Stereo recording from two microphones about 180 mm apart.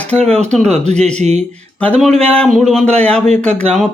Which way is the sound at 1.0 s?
40° right (ahead or behind).